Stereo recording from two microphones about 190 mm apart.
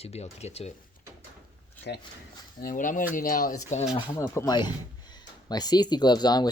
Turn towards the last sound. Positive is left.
turn(degrees=20)  # may be behind; listen again after turning